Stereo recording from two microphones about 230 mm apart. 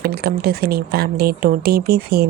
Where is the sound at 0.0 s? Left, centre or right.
Right.